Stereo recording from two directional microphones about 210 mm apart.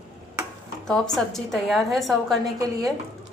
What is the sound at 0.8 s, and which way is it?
A woman's voice, centre (ahead or behind).